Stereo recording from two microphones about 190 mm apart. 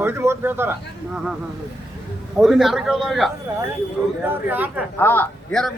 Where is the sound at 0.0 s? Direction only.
15° right (ahead or behind).